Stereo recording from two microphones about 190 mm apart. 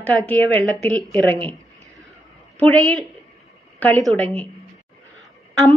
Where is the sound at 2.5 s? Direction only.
5° left (ahead or behind).